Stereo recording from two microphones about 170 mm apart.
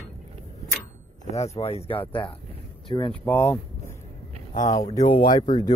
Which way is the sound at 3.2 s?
10° left (ahead or behind).